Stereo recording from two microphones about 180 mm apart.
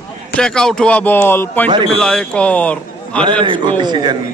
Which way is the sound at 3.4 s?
25° right (ahead or behind).